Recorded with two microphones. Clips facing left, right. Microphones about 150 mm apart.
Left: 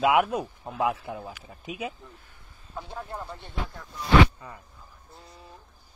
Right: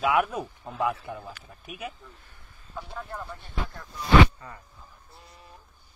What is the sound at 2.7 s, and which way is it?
Speech, 20° left (ahead or behind).